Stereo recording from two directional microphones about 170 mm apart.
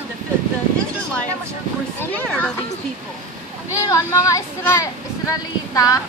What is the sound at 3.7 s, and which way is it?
Speech, 20° left (ahead or behind).